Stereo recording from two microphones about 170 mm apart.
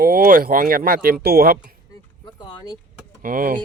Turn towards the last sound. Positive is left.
turn(degrees=-55)  # may be behind; listen again after turning